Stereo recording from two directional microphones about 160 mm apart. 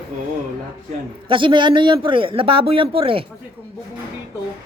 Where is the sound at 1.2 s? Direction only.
30° right (ahead or behind).